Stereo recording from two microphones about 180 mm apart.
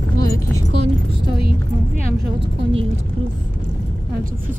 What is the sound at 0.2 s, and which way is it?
Music, 20° left (ahead or behind).